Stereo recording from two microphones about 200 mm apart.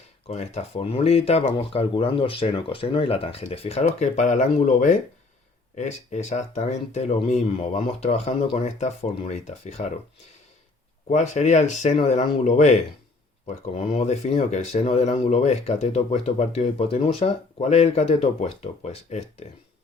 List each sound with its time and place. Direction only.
0.3 s speech: 30° left (ahead or behind)
11.1 s speech: 35° left (ahead or behind)